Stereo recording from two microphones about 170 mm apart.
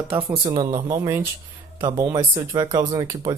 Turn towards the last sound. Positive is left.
turn(degrees=-20)  # may be behind; listen again after turning